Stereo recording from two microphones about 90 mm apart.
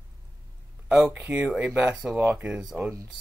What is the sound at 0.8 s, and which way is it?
Speech, 10° right (ahead or behind).